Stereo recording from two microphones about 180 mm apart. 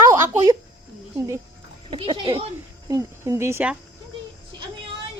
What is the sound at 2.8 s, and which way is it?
Speech, 20° right (ahead or behind).